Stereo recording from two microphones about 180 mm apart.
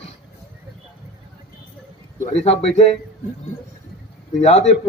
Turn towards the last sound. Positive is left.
turn(degrees=35)  # may be behind; listen again after turning